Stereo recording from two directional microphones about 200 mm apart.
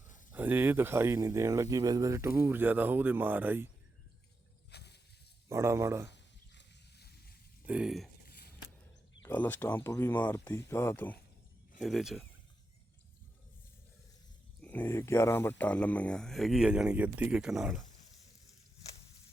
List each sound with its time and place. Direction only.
0.3 s speech: 10° right (ahead or behind)
4.7 s a sound: 55° left (ahead or behind)
5.5 s speech: 15° right (ahead or behind)
6.1 s sizzle: 60° left (ahead or behind)
7.7 s speech: 5° right (ahead or behind)
8.3 s a sound: 50° left (ahead or behind)
9.2 s speech: 10° left (ahead or behind)
14.6 s speech: 10° left (ahead or behind)